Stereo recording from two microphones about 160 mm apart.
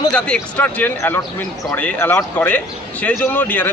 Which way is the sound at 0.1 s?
10° left (ahead or behind).